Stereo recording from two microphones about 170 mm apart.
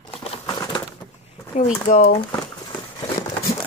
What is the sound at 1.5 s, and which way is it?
Speech, 45° left (ahead or behind).